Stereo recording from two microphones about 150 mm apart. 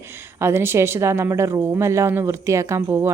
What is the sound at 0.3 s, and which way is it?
A woman's voice, 15° right (ahead or behind).